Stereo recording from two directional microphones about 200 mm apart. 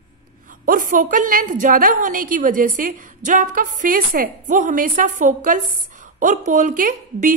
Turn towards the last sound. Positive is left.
turn(degrees=-40)  # may be behind; listen again after turning